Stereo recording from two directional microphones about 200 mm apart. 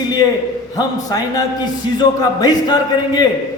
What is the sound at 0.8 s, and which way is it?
Speech, 20° left (ahead or behind).